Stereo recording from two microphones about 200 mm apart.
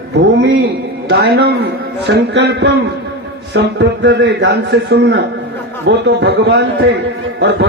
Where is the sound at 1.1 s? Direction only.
55° right (ahead or behind).